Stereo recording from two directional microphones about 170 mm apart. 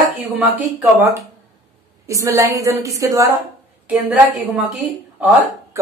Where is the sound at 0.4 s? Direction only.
10° right (ahead or behind).